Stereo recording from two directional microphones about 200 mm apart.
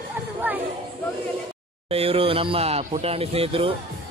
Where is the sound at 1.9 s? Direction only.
30° right (ahead or behind).